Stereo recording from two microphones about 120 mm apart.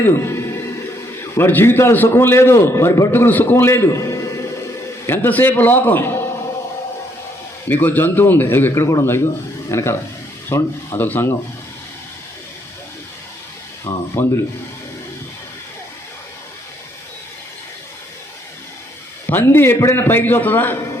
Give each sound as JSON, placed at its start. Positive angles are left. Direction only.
{"t": 0.0, "sound": "a man's voice", "side_deg": 20}
{"t": 7.7, "sound": "a man's voice", "side_deg": 15}
{"t": 13.8, "sound": "a man's voice", "side_deg": 20}
{"t": 19.3, "sound": "a man's voice", "side_deg": 20}